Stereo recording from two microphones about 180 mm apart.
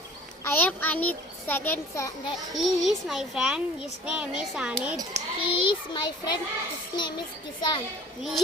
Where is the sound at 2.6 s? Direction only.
Centre (ahead or behind).